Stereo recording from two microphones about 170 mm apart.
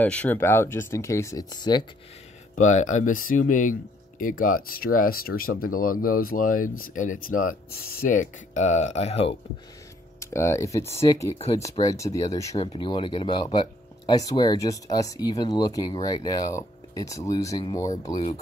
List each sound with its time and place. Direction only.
0.0 s speech: 10° left (ahead or behind); by 1.9 s 25° left (ahead or behind)
2.5 s speech: 45° left (ahead or behind)
10.2 s speech: 15° left (ahead or behind)
12.5 s speech: 30° left (ahead or behind)
18.1 s speech: 35° left (ahead or behind)